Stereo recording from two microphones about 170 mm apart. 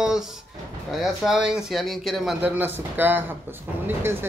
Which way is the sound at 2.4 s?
10° right (ahead or behind).